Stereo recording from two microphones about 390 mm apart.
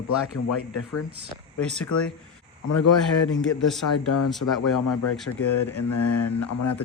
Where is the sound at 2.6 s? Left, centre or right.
Left.